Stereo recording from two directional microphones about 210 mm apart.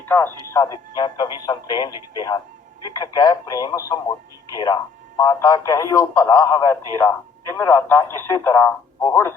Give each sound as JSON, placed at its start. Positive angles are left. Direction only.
{"t": 0.0, "sound": "a man's voice", "side_deg": 10}